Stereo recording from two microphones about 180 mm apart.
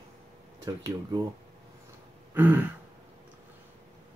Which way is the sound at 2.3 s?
10° right (ahead or behind).